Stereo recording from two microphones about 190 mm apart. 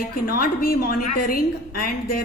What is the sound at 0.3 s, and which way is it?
A woman's voice, 50° left (ahead or behind).